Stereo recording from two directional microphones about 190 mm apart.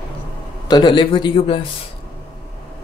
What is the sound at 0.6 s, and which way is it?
Speech, 25° left (ahead or behind).